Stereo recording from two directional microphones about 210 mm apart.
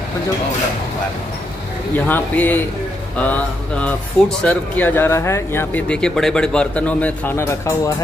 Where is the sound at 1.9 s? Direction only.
10° left (ahead or behind).